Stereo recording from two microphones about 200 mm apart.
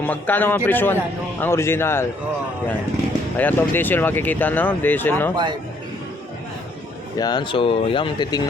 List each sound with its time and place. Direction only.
0.0 s speech: 10° left (ahead or behind)
3.3 s speech: 10° left (ahead or behind)
7.2 s speech: 20° left (ahead or behind)